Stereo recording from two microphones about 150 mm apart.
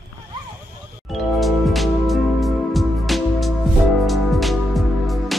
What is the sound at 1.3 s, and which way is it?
Music, centre (ahead or behind).